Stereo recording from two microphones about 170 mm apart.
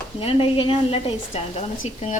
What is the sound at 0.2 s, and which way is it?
A woman's voice, 35° left (ahead or behind).